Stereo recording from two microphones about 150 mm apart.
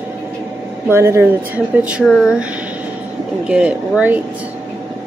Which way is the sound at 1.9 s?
5° right (ahead or behind).